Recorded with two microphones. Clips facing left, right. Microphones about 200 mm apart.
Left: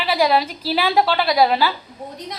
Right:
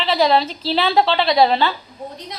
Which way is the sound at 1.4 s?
5° left (ahead or behind).